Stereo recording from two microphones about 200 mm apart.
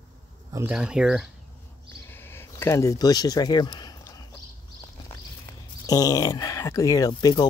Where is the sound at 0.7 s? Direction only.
5° right (ahead or behind).